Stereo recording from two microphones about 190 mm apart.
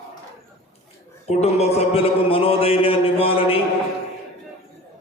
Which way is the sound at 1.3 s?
35° left (ahead or behind).